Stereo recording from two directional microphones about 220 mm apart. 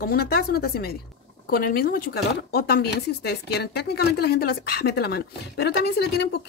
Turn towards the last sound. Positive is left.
turn(degrees=50)  # may be behind; listen again after turning